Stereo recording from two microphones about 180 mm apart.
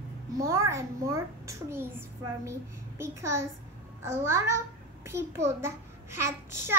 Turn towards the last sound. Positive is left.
turn(degrees=-15)  # may be behind; listen again after turning